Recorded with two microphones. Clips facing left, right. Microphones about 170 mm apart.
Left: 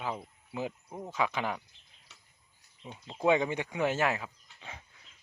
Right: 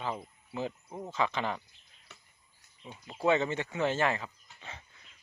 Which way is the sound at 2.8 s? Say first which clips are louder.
Left 1 dB; 15° left (ahead or behind).